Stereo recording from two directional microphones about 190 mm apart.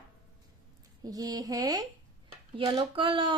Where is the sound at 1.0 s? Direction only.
20° right (ahead or behind).